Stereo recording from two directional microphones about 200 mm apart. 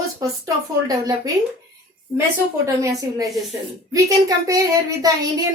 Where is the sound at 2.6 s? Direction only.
15° right (ahead or behind).